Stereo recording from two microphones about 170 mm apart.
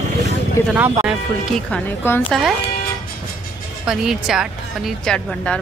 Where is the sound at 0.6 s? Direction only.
15° left (ahead or behind).